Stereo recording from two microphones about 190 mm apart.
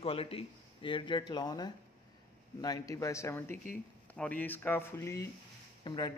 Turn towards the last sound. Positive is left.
turn(degrees=25)  # may be behind; listen again after turning